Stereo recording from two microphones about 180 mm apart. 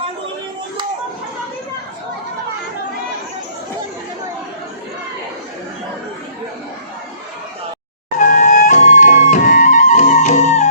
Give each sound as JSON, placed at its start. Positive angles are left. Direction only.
{"t": 8.2, "sound": "music", "side_deg": 45}